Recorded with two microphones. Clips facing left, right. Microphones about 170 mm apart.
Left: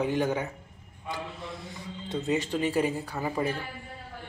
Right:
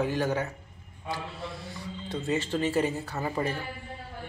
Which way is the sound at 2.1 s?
15° left (ahead or behind).